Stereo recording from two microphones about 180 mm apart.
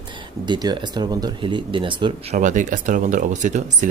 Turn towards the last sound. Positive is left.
turn(degrees=-45)  # may be behind; listen again after turning